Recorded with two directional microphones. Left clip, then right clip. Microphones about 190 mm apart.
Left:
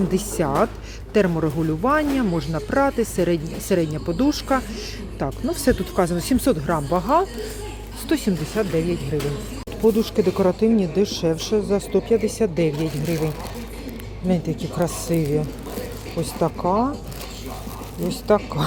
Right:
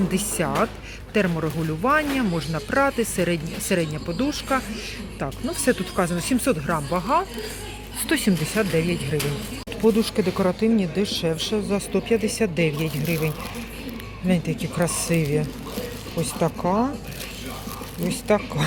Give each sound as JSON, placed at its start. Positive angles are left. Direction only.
{"t": 0.1, "sound": "speech", "side_deg": 25}
{"t": 8.0, "sound": "speech", "side_deg": 10}
{"t": 9.8, "sound": "speech", "side_deg": 20}
{"t": 18.3, "sound": "speech", "side_deg": 15}